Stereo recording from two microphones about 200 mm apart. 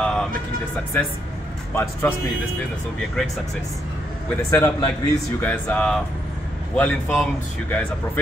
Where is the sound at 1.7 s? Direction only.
10° left (ahead or behind).